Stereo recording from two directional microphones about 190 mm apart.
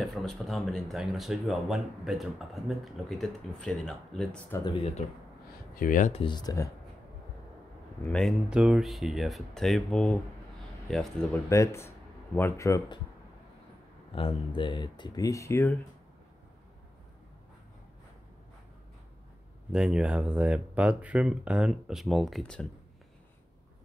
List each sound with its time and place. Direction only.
0.0 s speech: centre (ahead or behind)
5.8 s speech: 45° left (ahead or behind)
6.2 s speech: 20° left (ahead or behind)
8.0 s speech: 5° left (ahead or behind)
11.4 s speech: 15° left (ahead or behind)
14.1 s speech: 25° left (ahead or behind)
19.7 s speech: 5° right (ahead or behind)